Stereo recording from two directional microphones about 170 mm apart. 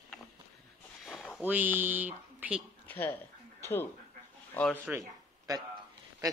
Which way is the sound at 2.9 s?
10° left (ahead or behind).